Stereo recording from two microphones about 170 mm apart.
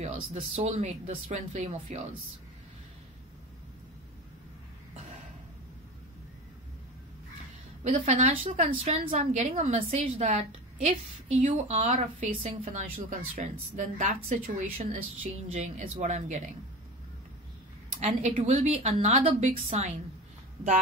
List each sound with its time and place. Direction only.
0.0 s a woman's voice: 40° right (ahead or behind)
7.8 s a woman's voice: 45° right (ahead or behind)
12.6 s a woman's voice: 50° right (ahead or behind)
18.0 s a woman's voice: 40° right (ahead or behind)